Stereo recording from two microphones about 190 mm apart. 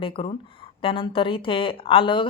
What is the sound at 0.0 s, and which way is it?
Speech, 30° left (ahead or behind).